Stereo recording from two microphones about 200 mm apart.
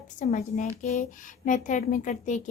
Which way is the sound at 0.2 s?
35° left (ahead or behind).